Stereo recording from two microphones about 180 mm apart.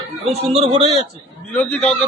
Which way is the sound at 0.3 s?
35° right (ahead or behind).